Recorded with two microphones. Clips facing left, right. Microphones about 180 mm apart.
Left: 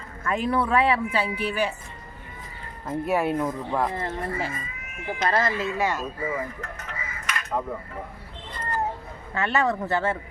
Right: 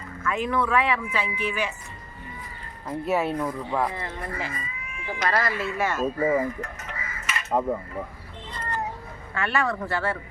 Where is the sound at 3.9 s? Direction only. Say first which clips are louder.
Left 4 dB; 45° left (ahead or behind).